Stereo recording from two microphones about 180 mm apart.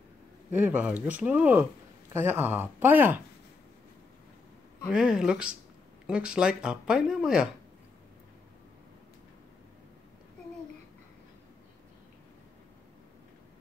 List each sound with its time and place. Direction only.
0.6 s speech: 10° right (ahead or behind)
4.8 s speech: 5° right (ahead or behind)